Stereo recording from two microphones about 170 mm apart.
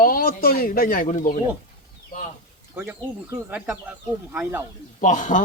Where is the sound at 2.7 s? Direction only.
15° right (ahead or behind).